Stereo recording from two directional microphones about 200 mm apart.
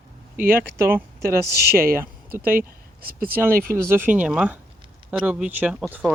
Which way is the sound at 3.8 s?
10° right (ahead or behind).